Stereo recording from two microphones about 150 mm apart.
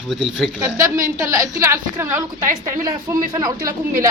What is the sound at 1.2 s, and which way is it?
Speech, 20° right (ahead or behind).